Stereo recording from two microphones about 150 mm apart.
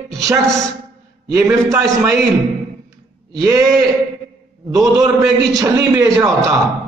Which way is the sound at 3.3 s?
25° right (ahead or behind).